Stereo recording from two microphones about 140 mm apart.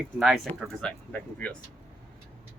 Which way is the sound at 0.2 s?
5° right (ahead or behind).